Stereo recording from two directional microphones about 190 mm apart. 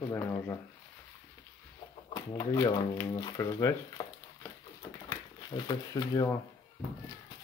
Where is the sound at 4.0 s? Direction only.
15° left (ahead or behind).